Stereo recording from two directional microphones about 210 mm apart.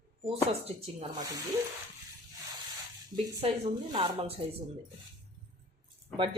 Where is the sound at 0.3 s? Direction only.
30° right (ahead or behind).